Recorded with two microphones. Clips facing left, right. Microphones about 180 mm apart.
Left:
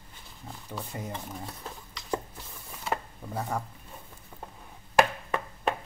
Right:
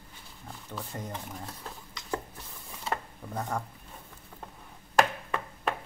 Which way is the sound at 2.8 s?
5° left (ahead or behind).